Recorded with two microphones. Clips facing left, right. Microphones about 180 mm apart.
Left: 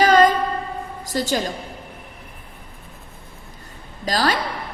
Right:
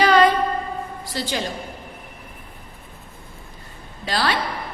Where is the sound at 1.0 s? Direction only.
45° left (ahead or behind).